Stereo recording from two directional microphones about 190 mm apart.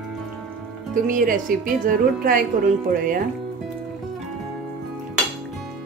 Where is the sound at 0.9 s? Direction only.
45° right (ahead or behind).